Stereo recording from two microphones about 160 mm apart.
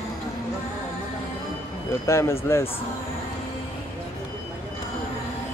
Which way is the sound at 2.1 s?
15° left (ahead or behind).